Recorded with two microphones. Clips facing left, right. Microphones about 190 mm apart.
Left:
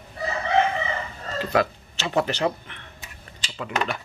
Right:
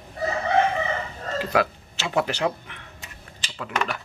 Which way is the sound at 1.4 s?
5° right (ahead or behind).